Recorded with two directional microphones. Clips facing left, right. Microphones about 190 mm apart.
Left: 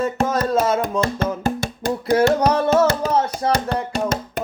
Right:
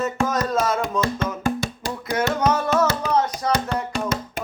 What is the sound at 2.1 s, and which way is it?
Music, 30° left (ahead or behind).